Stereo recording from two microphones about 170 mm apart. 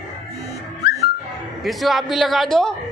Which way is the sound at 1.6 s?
Centre (ahead or behind).